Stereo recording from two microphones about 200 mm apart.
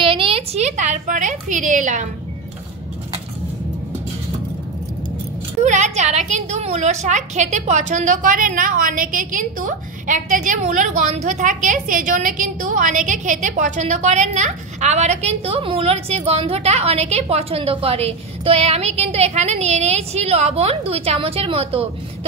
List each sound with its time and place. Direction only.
0.0 s a woman's voice: 25° right (ahead or behind)
5.6 s a woman's voice: 35° right (ahead or behind)